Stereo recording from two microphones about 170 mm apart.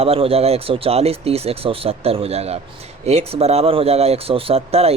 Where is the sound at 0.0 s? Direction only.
35° right (ahead or behind).